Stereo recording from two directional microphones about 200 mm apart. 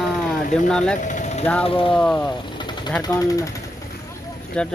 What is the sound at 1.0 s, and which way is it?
Vehicle, 40° left (ahead or behind).